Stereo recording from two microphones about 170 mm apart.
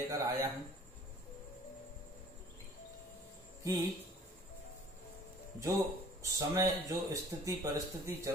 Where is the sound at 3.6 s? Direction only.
20° right (ahead or behind).